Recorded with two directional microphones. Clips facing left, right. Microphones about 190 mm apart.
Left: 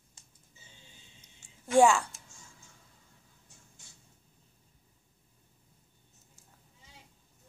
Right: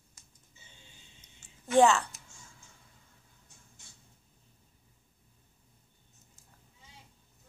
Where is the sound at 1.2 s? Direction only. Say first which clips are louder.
Even; 10° left (ahead or behind).